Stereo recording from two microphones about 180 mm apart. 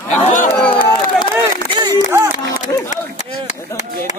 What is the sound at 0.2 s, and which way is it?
Chatter, 45° left (ahead or behind).